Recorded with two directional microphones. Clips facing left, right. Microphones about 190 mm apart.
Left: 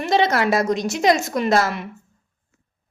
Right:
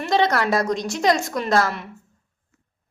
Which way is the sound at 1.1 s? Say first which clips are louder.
Left 2 dB; 5° left (ahead or behind).